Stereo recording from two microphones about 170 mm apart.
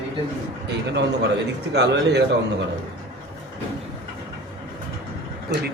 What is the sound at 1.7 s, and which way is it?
Speech, 80° right.